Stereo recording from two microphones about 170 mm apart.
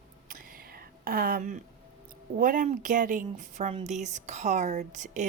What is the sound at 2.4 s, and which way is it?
Speech, 50° right (ahead or behind).